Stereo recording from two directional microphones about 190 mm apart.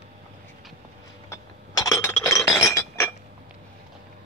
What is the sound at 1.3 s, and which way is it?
Chink, 15° left (ahead or behind).